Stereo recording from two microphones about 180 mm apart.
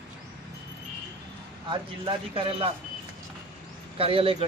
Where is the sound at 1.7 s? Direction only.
30° right (ahead or behind).